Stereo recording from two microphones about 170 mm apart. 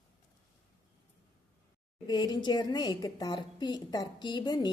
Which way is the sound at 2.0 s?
25° left (ahead or behind).